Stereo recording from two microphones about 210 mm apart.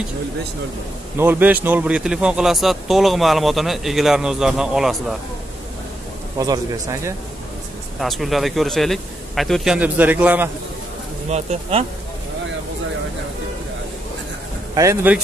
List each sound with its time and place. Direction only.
1.1 s speech: 10° right (ahead or behind)
6.3 s speech: 15° right (ahead or behind)
8.0 s speech: centre (ahead or behind)
11.2 s speech: 30° right (ahead or behind)
14.8 s speech: 15° right (ahead or behind)